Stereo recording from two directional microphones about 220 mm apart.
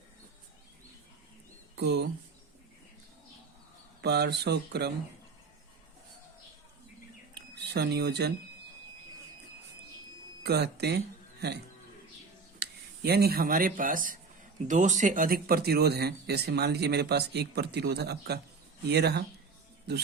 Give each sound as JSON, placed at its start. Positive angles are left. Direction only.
{"t": 1.7, "sound": "speech", "side_deg": -50}
{"t": 4.0, "sound": "speech", "side_deg": -50}
{"t": 7.3, "sound": "a sound", "side_deg": -50}
{"t": 10.4, "sound": "speech", "side_deg": -50}